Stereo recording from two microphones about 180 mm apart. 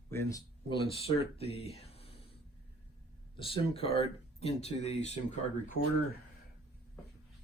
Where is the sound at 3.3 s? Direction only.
30° left (ahead or behind).